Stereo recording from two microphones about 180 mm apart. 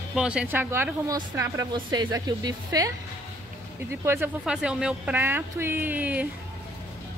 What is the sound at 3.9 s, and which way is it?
Speech, 15° right (ahead or behind).